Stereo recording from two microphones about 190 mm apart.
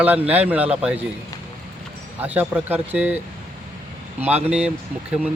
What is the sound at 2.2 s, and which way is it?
Speech, 10° right (ahead or behind).